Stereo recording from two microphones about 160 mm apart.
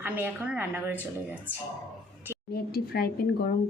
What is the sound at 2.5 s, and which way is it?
Speech, 75° left (ahead or behind).